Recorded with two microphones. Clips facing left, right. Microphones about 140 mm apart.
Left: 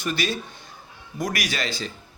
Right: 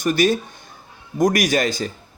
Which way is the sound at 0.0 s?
45° right (ahead or behind).